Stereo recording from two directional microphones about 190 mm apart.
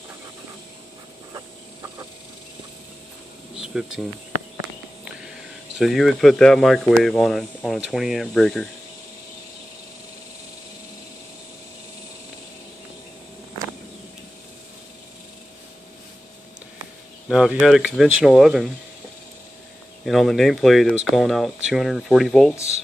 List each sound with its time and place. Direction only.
1.3 s a sound: 15° right (ahead or behind)
3.5 s air conditioning: 5° right (ahead or behind)
5.8 s speech: centre (ahead or behind)
17.3 s speech: 5° right (ahead or behind)
20.1 s speech: centre (ahead or behind)